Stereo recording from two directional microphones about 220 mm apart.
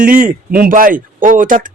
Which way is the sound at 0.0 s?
35° right (ahead or behind).